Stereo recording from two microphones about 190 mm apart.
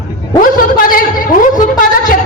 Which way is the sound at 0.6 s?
50° left (ahead or behind).